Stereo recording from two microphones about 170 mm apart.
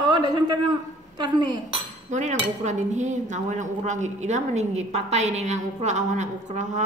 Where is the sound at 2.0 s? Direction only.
45° right (ahead or behind).